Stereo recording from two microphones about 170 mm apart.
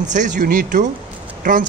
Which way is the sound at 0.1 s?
50° right (ahead or behind).